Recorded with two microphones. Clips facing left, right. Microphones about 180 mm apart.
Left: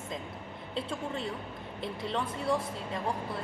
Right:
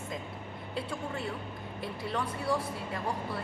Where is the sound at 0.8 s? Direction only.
25° left (ahead or behind).